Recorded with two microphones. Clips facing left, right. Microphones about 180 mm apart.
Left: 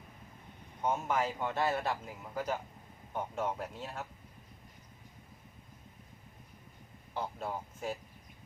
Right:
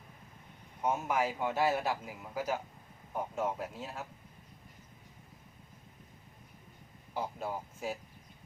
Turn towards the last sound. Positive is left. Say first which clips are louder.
# even
turn(degrees=-5)  # may be behind; listen again after turning